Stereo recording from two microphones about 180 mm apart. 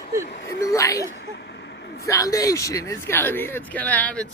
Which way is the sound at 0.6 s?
15° left (ahead or behind).